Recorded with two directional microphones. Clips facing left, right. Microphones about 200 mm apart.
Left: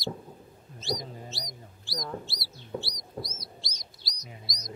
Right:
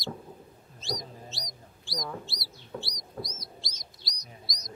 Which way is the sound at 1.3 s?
Centre (ahead or behind).